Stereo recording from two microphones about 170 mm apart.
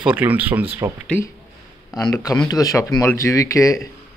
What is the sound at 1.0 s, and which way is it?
Speech, 10° left (ahead or behind).